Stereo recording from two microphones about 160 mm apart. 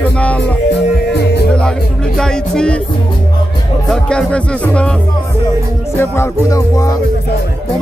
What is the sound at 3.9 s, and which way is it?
Speech, 5° left (ahead or behind).